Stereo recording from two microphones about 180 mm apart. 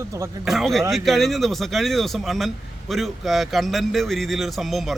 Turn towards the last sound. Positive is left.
turn(degrees=0)  # may be behind; listen again after turning